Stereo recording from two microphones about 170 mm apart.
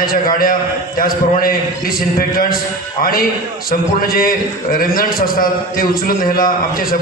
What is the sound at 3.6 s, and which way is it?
A man's voice, 60° left (ahead or behind).